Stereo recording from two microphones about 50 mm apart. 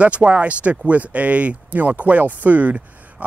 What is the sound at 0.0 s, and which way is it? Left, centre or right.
Speech, right.